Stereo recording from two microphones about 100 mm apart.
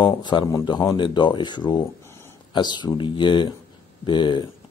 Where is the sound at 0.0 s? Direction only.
50° left (ahead or behind).